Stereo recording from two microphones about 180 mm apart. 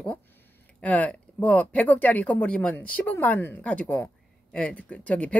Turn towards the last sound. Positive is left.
turn(degrees=5)  # may be behind; listen again after turning